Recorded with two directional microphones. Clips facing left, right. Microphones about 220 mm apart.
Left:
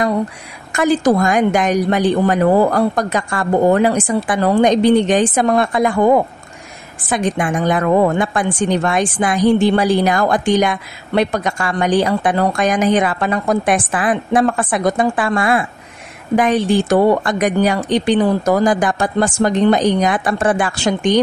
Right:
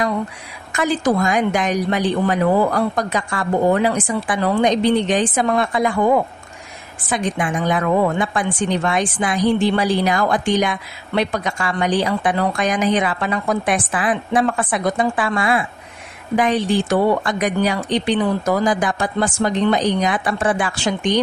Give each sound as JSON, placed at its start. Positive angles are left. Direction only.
{"t": 0.7, "sound": "a woman's voice", "side_deg": 45}